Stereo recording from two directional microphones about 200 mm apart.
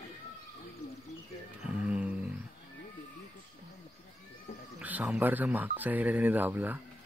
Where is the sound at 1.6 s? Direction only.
5° right (ahead or behind).